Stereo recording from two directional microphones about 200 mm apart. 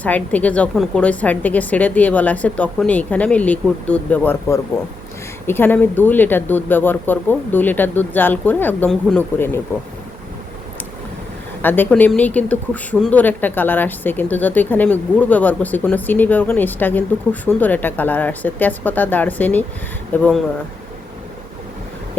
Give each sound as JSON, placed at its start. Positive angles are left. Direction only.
{"t": 0.0, "sound": "speech", "side_deg": 5}
{"t": 11.6, "sound": "speech", "side_deg": 10}